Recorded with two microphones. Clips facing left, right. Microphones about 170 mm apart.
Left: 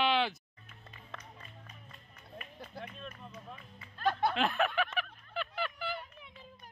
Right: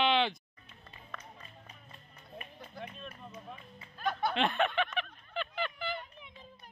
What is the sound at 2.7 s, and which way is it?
Music, 5° right (ahead or behind).